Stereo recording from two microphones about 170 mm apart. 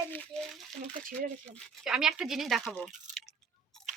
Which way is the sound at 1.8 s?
5° right (ahead or behind).